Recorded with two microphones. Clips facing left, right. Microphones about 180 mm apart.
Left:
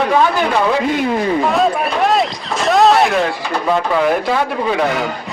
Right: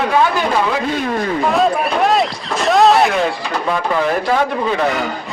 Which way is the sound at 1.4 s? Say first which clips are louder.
Even; centre (ahead or behind).